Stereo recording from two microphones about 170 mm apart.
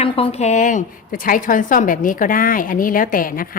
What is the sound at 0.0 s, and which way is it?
A woman's voice, 35° left (ahead or behind).